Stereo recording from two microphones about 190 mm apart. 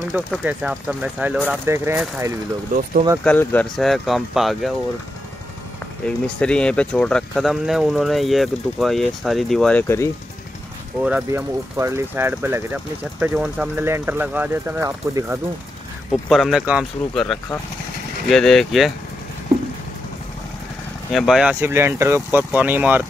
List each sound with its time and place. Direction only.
0.1 s speech: 5° right (ahead or behind)
2.7 s speech: 45° right (ahead or behind)
3.3 s speech: 5° left (ahead or behind)
6.0 s speech: 5° left (ahead or behind)
11.0 s speech: 5° right (ahead or behind)
16.1 s speech: centre (ahead or behind)
21.1 s speech: centre (ahead or behind)